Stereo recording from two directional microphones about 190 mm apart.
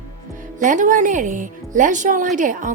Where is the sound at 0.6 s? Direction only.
40° right (ahead or behind).